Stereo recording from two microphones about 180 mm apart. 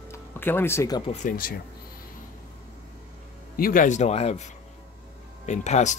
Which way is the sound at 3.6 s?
50° left (ahead or behind).